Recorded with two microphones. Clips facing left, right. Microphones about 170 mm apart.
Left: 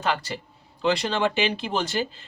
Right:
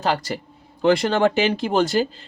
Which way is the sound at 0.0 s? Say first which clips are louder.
Right 4 dB; 40° right (ahead or behind).